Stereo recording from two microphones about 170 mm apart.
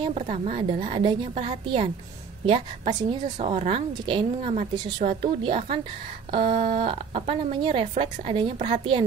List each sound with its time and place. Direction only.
0.0 s a woman's voice: 40° right (ahead or behind)